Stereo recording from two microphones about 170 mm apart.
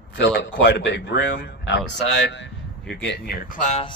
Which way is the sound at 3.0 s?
65° left (ahead or behind).